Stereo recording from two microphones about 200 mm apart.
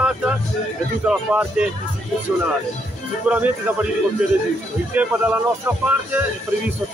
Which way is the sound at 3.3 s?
10° right (ahead or behind).